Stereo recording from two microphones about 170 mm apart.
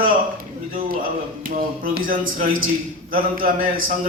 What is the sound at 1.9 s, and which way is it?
A man's voice, 55° right (ahead or behind).